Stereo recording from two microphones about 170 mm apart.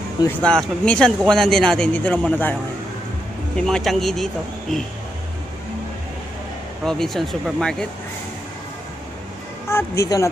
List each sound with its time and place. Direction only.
0.4 s speech: 5° left (ahead or behind)
3.5 s speech: 5° left (ahead or behind)
6.8 s speech: centre (ahead or behind)
9.7 s speech: 15° left (ahead or behind)